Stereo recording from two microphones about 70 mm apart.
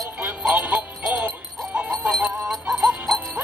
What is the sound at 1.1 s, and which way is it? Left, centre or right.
Music, right.